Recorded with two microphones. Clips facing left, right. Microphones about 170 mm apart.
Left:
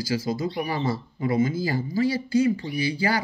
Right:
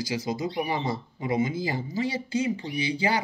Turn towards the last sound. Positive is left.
turn(degrees=-20)  # may be behind; listen again after turning